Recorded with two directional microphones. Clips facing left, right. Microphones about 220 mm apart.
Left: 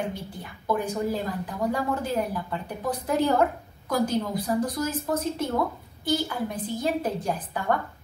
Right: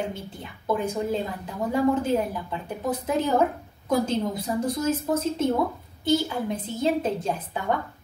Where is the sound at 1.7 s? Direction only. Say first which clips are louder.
Right 8 dB; 20° right (ahead or behind).